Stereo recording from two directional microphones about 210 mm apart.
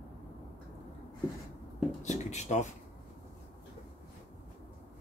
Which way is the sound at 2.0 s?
35° left (ahead or behind).